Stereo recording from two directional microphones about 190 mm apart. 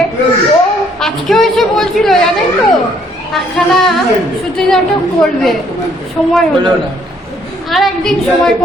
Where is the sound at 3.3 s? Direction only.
Centre (ahead or behind).